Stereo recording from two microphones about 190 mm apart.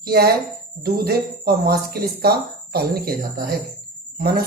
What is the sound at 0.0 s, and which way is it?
Speech, 55° right (ahead or behind).